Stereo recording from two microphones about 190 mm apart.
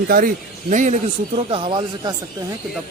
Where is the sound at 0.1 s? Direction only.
45° right (ahead or behind).